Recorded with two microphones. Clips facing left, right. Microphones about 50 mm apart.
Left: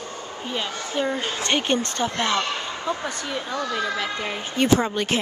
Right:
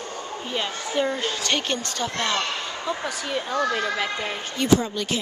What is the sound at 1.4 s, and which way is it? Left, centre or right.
Speech, centre.